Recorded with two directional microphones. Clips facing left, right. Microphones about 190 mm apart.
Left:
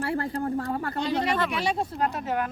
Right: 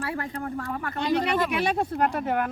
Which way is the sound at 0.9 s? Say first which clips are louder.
Right 3 dB; 60° right (ahead or behind).